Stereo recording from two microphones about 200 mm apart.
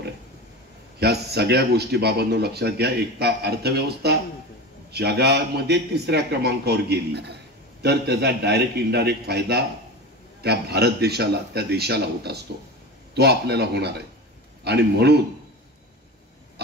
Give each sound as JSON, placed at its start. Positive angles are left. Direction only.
{"t": 0.9, "sound": "a man's voice", "side_deg": -55}